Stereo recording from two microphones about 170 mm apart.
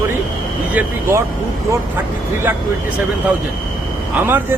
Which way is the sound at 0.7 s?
15° right (ahead or behind).